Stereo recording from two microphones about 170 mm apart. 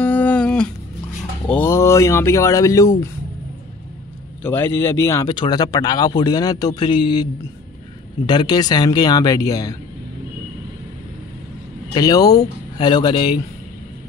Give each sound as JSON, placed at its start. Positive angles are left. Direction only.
{"t": 0.0, "sound": "a sound", "side_deg": 10}
{"t": 1.5, "sound": "speech", "side_deg": 15}
{"t": 4.4, "sound": "speech", "side_deg": 15}
{"t": 8.3, "sound": "speech", "side_deg": 25}
{"t": 11.9, "sound": "speech", "side_deg": 20}